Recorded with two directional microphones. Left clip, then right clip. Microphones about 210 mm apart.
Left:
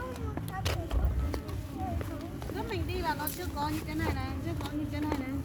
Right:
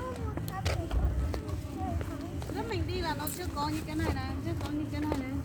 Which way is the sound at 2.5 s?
5° left (ahead or behind).